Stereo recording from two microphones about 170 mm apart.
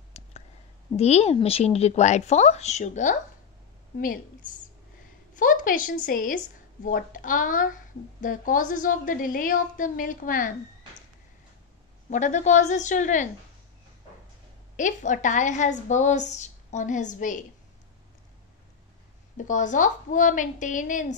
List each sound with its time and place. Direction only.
0.2 s a sound: 40° left (ahead or behind)
0.9 s a woman's voice: 40° left (ahead or behind)
12.1 s a woman's voice: 45° left (ahead or behind)
14.8 s a woman's voice: 50° left (ahead or behind)
19.3 s a woman's voice: 50° left (ahead or behind)